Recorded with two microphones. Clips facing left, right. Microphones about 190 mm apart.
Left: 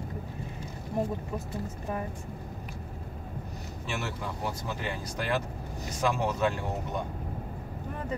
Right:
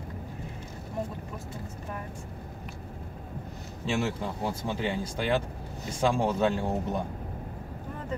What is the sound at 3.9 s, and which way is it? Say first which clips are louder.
Speech: right 6 dB; 30° right (ahead or behind).